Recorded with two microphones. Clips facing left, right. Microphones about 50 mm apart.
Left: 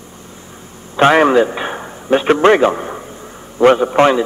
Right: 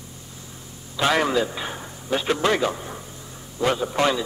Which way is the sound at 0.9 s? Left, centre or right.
Left.